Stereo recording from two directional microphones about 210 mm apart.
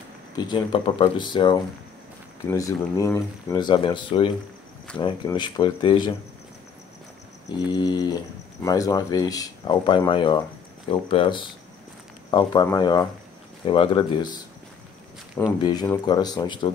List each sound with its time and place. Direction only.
0.4 s speech: 20° left (ahead or behind)
7.7 s speech: 20° left (ahead or behind)
15.6 s speech: 20° left (ahead or behind)